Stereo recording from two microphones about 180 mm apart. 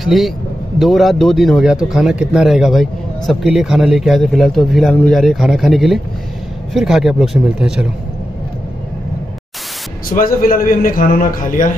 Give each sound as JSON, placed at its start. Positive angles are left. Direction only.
{"t": 0.0, "sound": "a man's voice", "side_deg": 0}
{"t": 10.1, "sound": "a man's voice", "side_deg": 50}